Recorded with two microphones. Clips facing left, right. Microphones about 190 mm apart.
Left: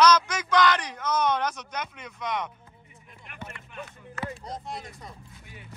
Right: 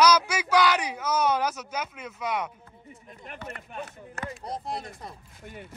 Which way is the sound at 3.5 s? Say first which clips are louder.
Right 6 dB; 40° right (ahead or behind).